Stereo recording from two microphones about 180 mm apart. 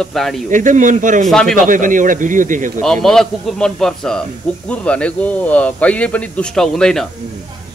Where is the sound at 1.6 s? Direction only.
45° right (ahead or behind).